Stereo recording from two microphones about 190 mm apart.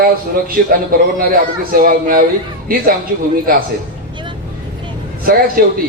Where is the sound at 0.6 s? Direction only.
50° right (ahead or behind).